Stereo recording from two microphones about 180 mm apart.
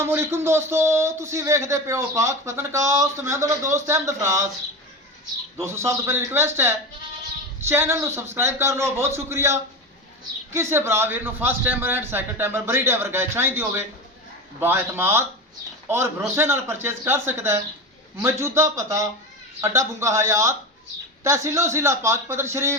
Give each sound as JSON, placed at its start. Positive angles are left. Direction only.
{"t": 0.0, "sound": "speech", "side_deg": -15}
{"t": 5.5, "sound": "speech", "side_deg": -15}